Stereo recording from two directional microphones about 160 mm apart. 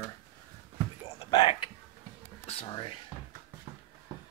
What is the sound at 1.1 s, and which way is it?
Speech, 30° left (ahead or behind).